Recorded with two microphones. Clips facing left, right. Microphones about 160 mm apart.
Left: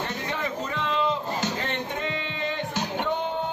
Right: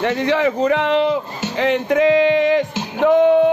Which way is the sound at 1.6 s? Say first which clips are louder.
Right 14 dB; 90° right.